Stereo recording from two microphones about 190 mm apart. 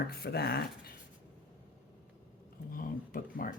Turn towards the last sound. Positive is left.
turn(degrees=50)  # may be behind; listen again after turning